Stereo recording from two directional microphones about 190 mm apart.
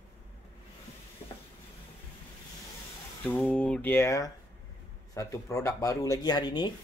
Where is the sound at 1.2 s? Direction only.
30° left (ahead or behind).